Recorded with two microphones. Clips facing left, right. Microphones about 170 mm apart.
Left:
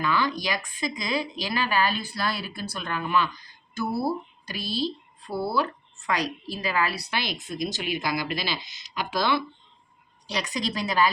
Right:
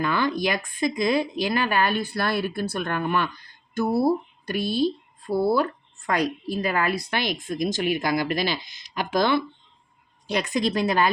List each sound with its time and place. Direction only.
0.0 s speech: 55° right (ahead or behind)
4.4 s speech: 55° right (ahead or behind)
5.3 s speech: 20° right (ahead or behind)
5.5 s a woman's voice: 50° right (ahead or behind)